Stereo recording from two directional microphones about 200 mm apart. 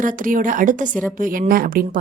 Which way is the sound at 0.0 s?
40° right (ahead or behind).